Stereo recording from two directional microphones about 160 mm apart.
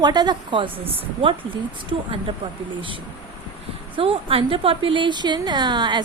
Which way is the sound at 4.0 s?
35° right (ahead or behind).